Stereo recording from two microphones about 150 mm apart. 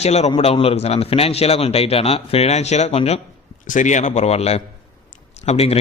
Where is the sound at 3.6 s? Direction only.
55° left (ahead or behind).